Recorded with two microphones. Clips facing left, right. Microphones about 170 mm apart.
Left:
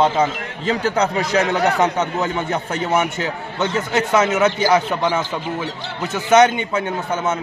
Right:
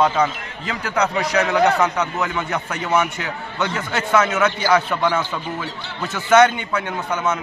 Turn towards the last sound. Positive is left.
turn(degrees=25)  # may be behind; listen again after turning